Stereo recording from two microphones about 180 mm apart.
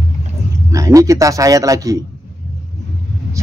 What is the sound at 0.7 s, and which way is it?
A man's voice, 15° right (ahead or behind).